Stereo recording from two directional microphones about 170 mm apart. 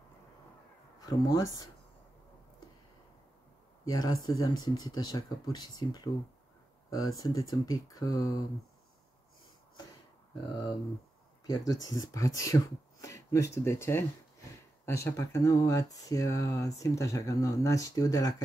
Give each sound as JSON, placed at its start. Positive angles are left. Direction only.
{"t": 1.0, "sound": "speech", "side_deg": 20}
{"t": 3.8, "sound": "speech", "side_deg": 20}
{"t": 11.4, "sound": "speech", "side_deg": 20}